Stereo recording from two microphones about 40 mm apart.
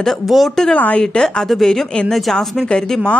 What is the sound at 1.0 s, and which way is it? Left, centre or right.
A woman's voice, centre.